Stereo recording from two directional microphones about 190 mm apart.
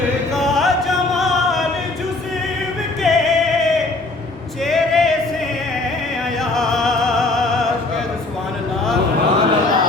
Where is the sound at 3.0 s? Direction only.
Centre (ahead or behind).